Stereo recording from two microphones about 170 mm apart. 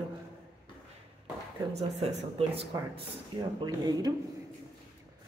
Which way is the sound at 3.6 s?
25° right (ahead or behind).